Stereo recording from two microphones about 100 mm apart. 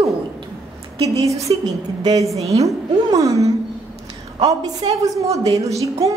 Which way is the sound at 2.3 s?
90° right.